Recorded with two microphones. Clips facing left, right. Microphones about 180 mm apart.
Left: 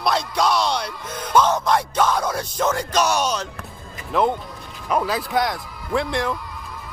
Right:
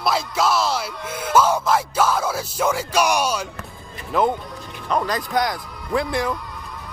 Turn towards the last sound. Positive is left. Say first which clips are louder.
# even
turn(degrees=0)  # may be behind; listen again after turning